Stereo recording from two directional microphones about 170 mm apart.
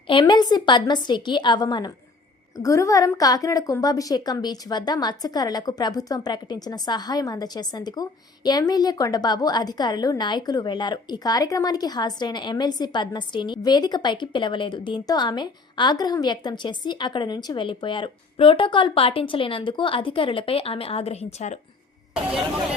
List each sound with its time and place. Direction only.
0.1 s a woman's voice: 30° left (ahead or behind)
22.1 s speech: 5° right (ahead or behind)